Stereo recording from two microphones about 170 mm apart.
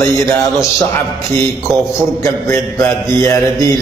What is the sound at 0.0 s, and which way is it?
Speech, 15° left (ahead or behind).